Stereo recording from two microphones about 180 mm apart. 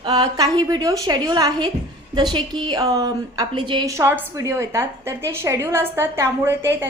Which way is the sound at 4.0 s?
15° right (ahead or behind).